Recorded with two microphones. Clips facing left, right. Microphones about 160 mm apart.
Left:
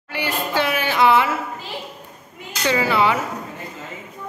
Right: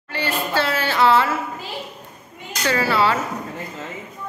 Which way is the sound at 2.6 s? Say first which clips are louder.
Left 1 dB; 15° left (ahead or behind).